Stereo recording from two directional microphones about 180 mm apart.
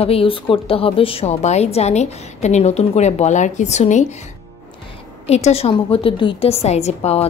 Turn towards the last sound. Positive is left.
turn(degrees=35)  # may be behind; listen again after turning